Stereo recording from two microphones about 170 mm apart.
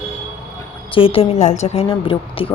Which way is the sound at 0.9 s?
35° left (ahead or behind).